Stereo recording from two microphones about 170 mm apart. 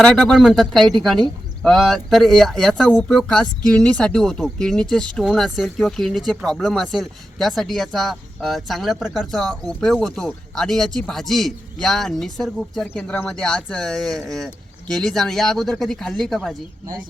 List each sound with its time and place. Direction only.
0.0 s speech: 5° left (ahead or behind)